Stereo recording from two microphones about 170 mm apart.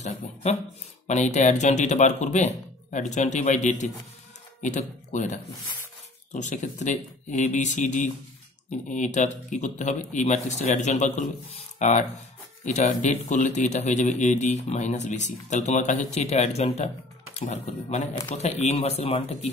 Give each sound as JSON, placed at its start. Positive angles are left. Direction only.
{"t": 0.0, "sound": "speech", "side_deg": 40}